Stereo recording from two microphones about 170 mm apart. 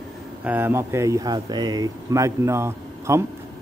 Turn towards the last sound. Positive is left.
turn(degrees=-15)  # may be behind; listen again after turning